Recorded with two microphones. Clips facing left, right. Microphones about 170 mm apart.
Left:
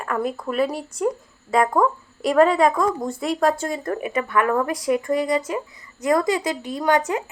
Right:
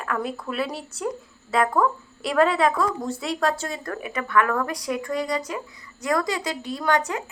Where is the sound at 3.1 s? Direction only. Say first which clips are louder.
Left 4 dB; 55° left (ahead or behind).